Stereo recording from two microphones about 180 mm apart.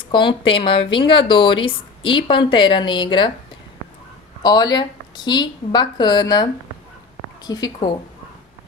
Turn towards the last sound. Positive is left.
turn(degrees=25)  # may be behind; listen again after turning